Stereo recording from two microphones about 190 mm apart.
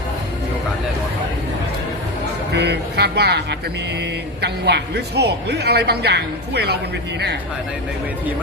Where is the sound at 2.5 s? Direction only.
65° right (ahead or behind).